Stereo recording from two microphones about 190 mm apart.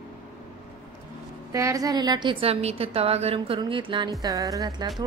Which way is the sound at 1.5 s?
15° right (ahead or behind).